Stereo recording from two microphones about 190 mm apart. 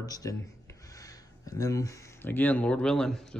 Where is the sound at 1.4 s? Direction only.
20° left (ahead or behind).